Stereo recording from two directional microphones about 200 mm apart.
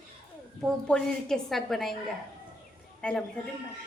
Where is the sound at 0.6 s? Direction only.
5° left (ahead or behind).